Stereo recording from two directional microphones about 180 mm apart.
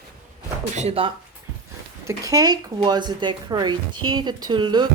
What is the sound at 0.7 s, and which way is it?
Speech, 35° right (ahead or behind).